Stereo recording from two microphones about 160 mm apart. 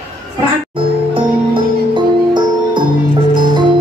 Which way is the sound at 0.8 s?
30° right (ahead or behind).